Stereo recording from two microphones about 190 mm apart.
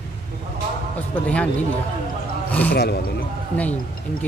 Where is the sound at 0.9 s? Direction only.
5° left (ahead or behind).